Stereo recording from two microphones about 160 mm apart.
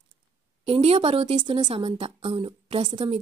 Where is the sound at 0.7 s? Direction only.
35° right (ahead or behind).